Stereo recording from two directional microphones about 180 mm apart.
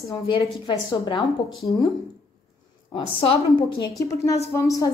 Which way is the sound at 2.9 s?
30° left (ahead or behind).